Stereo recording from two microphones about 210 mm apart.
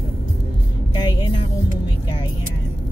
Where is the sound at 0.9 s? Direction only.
20° left (ahead or behind).